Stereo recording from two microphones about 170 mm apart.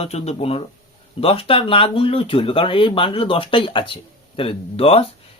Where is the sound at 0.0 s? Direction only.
35° left (ahead or behind).